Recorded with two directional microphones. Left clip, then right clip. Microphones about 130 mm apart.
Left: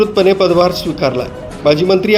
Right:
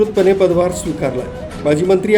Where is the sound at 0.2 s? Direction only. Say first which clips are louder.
Left 3 dB; 25° left (ahead or behind).